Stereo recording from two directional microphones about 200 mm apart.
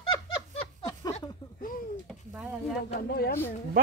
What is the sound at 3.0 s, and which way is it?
Speech, 50° left (ahead or behind).